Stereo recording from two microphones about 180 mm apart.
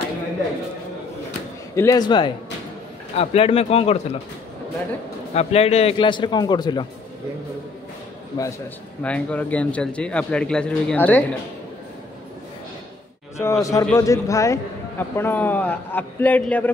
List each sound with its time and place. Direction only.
1.8 s speech: 20° left (ahead or behind)
5.3 s speech: 35° left (ahead or behind)
8.3 s speech: 20° left (ahead or behind)
9.0 s a man's voice: 5° left (ahead or behind)
13.4 s a man's voice: 15° left (ahead or behind)